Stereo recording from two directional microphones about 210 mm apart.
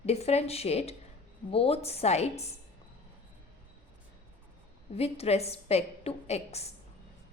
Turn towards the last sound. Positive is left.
turn(degrees=30)  # may be behind; listen again after turning